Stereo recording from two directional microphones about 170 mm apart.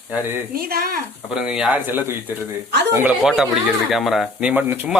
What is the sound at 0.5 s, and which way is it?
Speech, 60° right (ahead or behind).